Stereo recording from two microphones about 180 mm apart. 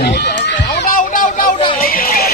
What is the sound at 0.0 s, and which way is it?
Run, 70° left (ahead or behind).